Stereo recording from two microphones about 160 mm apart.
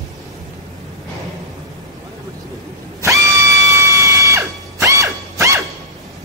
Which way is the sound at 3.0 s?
20° right (ahead or behind).